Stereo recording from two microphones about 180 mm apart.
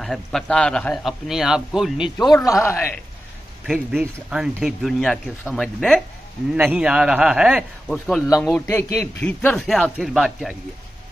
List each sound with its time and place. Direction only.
0.0 s speech: centre (ahead or behind)
2.0 s a man's voice: 25° left (ahead or behind)
2.6 s a woman's voice: 10° left (ahead or behind)
3.6 s speech: centre (ahead or behind)
8.2 s a woman's voice: 15° left (ahead or behind); by 10.5 s centre (ahead or behind)